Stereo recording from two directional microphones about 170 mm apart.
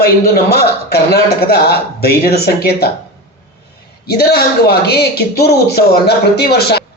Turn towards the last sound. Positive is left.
turn(degrees=70)  # may be behind; listen again after turning